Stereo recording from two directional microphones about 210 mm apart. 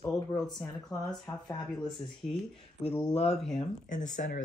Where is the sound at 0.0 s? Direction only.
10° left (ahead or behind).